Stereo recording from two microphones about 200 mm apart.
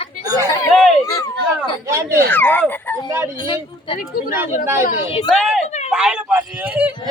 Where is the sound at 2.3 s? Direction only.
10° left (ahead or behind).